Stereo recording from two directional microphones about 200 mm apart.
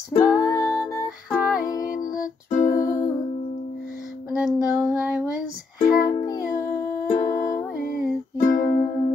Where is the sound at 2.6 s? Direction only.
15° left (ahead or behind).